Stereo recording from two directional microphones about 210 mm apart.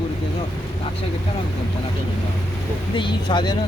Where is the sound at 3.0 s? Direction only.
20° left (ahead or behind).